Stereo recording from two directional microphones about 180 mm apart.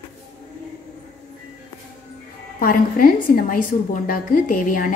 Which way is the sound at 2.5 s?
55° left (ahead or behind).